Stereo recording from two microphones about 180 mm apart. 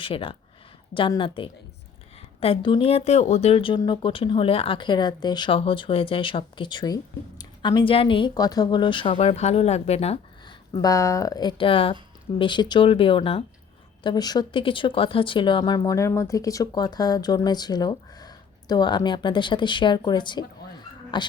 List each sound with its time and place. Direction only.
0.0 s speech: 30° left (ahead or behind)
9.1 s speech: 40° left (ahead or behind)
10.7 s speech: 20° left (ahead or behind)